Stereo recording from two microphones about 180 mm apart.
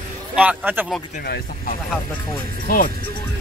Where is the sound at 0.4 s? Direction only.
10° right (ahead or behind).